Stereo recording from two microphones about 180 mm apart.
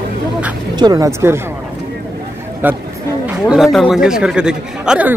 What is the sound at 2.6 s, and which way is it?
A man's voice, 10° right (ahead or behind).